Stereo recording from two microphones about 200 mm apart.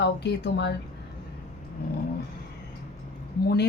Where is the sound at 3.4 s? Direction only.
55° left (ahead or behind).